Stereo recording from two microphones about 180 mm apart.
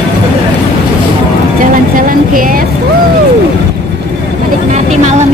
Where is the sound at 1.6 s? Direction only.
50° right (ahead or behind).